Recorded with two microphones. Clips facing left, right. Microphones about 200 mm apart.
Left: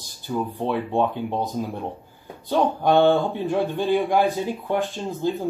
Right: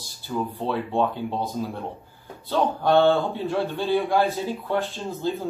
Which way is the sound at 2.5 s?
15° left (ahead or behind).